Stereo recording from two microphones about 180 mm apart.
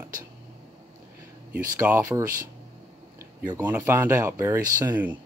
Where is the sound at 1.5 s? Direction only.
10° right (ahead or behind).